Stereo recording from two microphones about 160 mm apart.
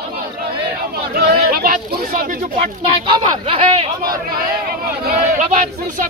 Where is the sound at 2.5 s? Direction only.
30° right (ahead or behind).